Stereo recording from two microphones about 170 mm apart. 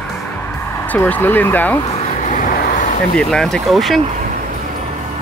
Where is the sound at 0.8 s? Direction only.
10° left (ahead or behind).